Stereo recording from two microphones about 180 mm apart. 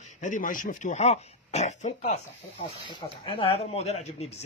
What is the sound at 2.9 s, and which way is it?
A man's voice, 30° left (ahead or behind).